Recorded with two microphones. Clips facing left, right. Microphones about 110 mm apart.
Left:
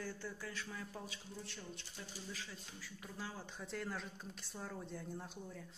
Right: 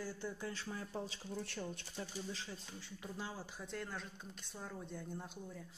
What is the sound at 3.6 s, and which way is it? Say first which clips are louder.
Speech: left 2 dB; centre (ahead or behind).